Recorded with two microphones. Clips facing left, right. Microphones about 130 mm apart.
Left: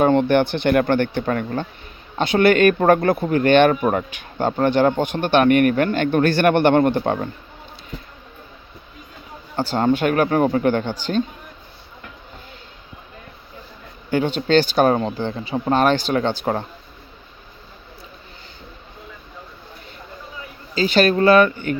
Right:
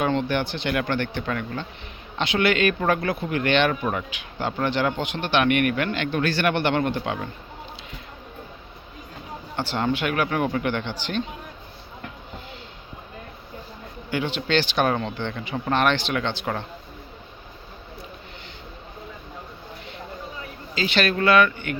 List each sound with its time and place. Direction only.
0.0 s speech: 50° left (ahead or behind)
9.6 s speech: 45° left (ahead or behind)
14.1 s speech: 45° left (ahead or behind)
20.7 s speech: 40° left (ahead or behind)